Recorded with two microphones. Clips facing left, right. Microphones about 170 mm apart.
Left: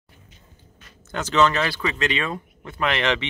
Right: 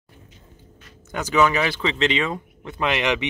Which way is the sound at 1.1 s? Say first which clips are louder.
Even; 10° right (ahead or behind).